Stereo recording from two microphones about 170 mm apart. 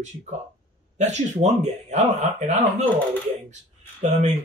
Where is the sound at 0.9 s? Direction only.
40° right (ahead or behind).